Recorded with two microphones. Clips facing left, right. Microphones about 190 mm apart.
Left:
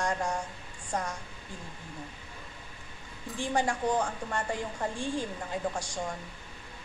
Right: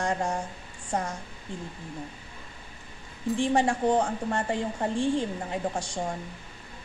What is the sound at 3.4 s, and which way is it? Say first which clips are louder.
A woman's voice: right 4 dB; 25° right (ahead or behind).